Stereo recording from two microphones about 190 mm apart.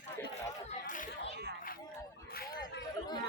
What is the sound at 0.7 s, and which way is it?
Chatter, 45° left (ahead or behind).